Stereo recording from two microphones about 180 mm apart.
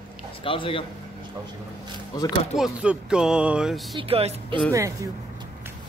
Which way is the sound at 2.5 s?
5° right (ahead or behind).